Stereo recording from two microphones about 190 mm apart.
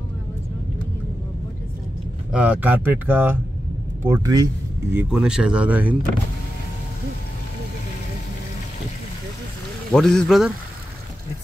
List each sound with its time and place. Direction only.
2.3 s speech: 10° right (ahead or behind)
4.9 s speech: 5° right (ahead or behind)
9.9 s speech: 5° left (ahead or behind)